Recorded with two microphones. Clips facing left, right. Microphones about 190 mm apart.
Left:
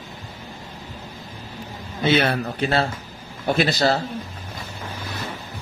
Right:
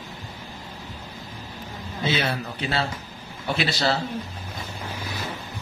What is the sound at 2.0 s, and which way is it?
Speech, 60° left (ahead or behind).